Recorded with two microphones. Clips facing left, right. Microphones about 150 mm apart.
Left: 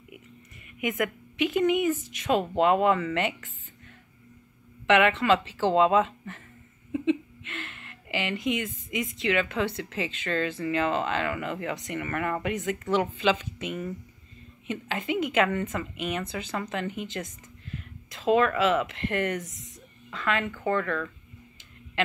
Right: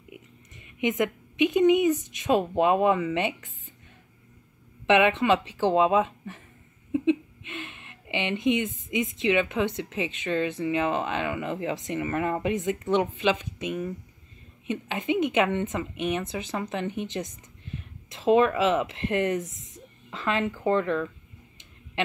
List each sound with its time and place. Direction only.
0.7 s a woman's voice: 25° right (ahead or behind)
4.8 s a woman's voice: 20° right (ahead or behind)
13.6 s a woman's voice: 10° right (ahead or behind)